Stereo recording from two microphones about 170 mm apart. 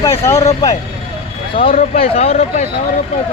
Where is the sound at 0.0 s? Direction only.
15° left (ahead or behind).